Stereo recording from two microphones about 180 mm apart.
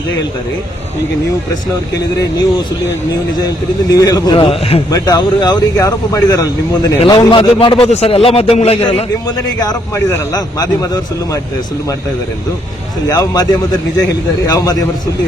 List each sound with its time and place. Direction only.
3.9 s a man's voice: 20° left (ahead or behind)
4.9 s a man's voice: 20° left (ahead or behind)
9.2 s a man's voice: 20° left (ahead or behind)
13.1 s a man's voice: 20° left (ahead or behind)